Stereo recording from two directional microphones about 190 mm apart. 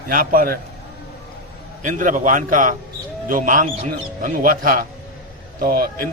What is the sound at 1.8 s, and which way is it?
Speech, 45° right (ahead or behind).